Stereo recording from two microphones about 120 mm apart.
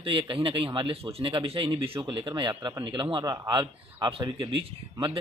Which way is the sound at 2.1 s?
40° right (ahead or behind).